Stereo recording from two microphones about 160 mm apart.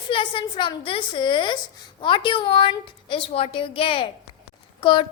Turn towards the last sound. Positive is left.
turn(degrees=30)  # may be behind; listen again after turning